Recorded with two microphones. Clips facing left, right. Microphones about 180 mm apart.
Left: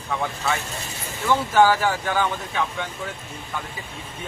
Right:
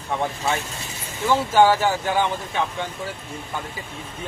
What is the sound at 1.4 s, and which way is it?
Speech, 25° right (ahead or behind).